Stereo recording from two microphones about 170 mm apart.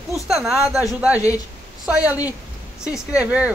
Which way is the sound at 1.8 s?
5° right (ahead or behind).